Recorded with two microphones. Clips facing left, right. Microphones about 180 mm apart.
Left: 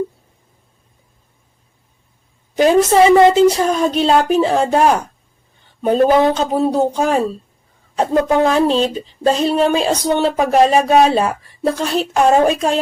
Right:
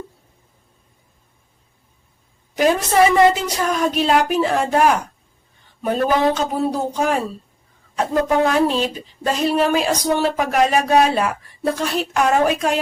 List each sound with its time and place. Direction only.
2.6 s speech: 25° left (ahead or behind)